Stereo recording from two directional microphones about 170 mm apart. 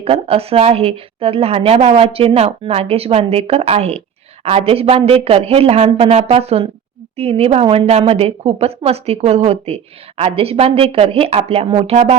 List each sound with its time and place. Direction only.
0.0 s a woman's voice: 35° right (ahead or behind)